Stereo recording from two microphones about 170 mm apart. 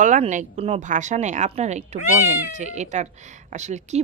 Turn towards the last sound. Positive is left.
turn(degrees=-45)  # may be behind; listen again after turning